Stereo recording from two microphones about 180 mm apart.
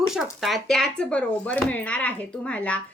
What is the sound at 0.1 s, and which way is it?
Speech, centre (ahead or behind).